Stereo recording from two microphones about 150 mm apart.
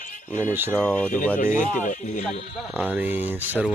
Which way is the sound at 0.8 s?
10° left (ahead or behind).